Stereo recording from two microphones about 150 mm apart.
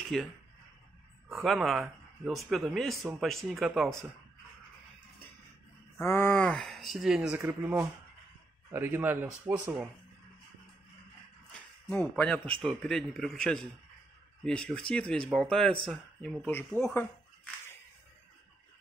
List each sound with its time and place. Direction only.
0.1 s speech: centre (ahead or behind)
1.3 s speech: centre (ahead or behind)
5.9 s speech: 15° left (ahead or behind); by 7.3 s 5° right (ahead or behind)
7.3 s speech: 15° right (ahead or behind)
11.9 s speech: 5° left (ahead or behind)
16.4 s speech: 15° left (ahead or behind)